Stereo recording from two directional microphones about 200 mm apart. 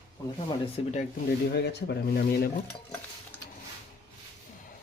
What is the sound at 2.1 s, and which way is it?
Stir, 50° left (ahead or behind).